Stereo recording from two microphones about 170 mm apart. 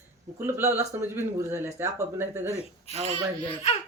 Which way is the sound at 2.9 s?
35° left (ahead or behind).